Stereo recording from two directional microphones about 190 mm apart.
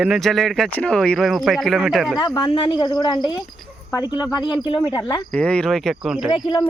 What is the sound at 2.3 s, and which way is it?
Speech, 25° left (ahead or behind).